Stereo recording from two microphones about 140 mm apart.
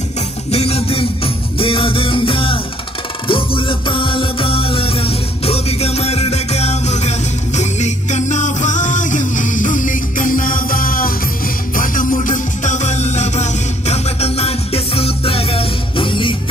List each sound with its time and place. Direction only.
0.5 s music: 45° left (ahead or behind); by 11.1 s 90° left
11.7 s music: 75° left (ahead or behind); by 16.3 s 35° left (ahead or behind)